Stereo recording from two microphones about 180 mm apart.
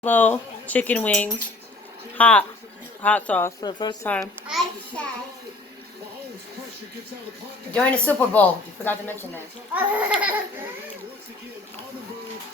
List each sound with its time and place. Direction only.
0.0 s a woman's voice: 10° left (ahead or behind)
3.6 s speech: 25° left (ahead or behind)
4.0 s a woman's voice: 10° left (ahead or behind)
4.4 s a sound: centre (ahead or behind)
7.7 s a woman's voice: 5° left (ahead or behind)
9.7 s laughter: 10° right (ahead or behind)